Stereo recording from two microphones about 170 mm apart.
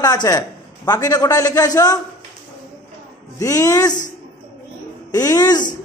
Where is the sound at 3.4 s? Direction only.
20° left (ahead or behind).